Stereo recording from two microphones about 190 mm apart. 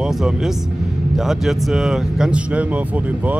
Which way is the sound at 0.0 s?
5° right (ahead or behind).